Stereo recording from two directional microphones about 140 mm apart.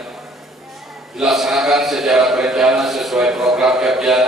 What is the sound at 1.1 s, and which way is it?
A man's voice, centre (ahead or behind).